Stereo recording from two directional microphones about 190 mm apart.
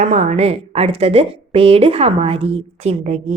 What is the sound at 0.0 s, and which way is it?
A woman's voice, 35° right (ahead or behind).